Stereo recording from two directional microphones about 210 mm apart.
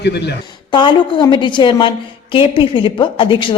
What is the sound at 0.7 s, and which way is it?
A woman's voice, 20° left (ahead or behind).